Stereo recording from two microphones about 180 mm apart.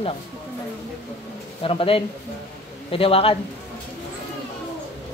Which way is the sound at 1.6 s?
30° left (ahead or behind).